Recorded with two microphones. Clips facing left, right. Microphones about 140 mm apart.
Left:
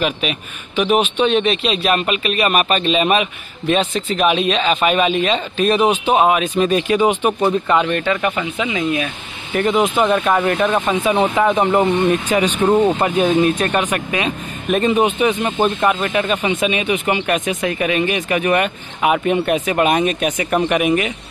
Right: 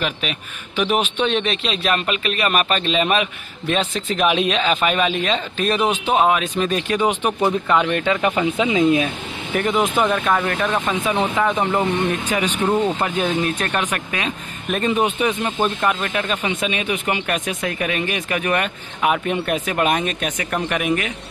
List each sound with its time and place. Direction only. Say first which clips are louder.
0.0 s speech: left 5 dB; 10° left (ahead or behind)
7.9 s speech: left 1 dB; 15° right (ahead or behind)
9.8 s speech: left 3 dB; 20° left (ahead or behind)
10.3 s speech: left 4 dB; 10° left (ahead or behind)
11.3 s speech: left 4 dB; 25° left (ahead or behind)
13.0 s speech: left 6 dB; 10° left (ahead or behind)